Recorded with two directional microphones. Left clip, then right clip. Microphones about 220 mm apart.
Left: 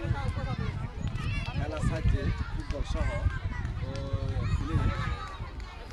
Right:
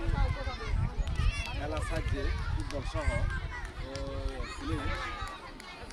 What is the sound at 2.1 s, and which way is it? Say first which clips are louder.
Speech: left 1 dB; 50° right (ahead or behind).